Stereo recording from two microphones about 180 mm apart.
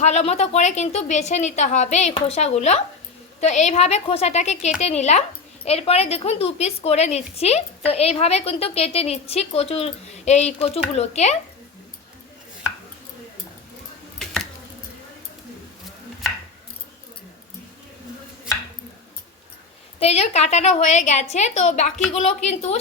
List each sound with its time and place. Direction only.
0.0 s a woman's voice: 35° left (ahead or behind)
20.0 s a woman's voice: 35° left (ahead or behind)